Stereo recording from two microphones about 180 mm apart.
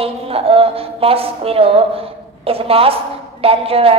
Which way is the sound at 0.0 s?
30° right (ahead or behind).